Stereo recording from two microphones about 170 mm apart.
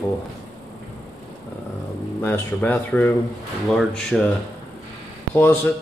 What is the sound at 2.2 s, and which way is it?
Speech, 10° left (ahead or behind).